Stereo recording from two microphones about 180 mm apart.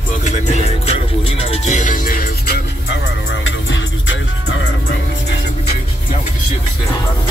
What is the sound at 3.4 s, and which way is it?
Music, 90° left.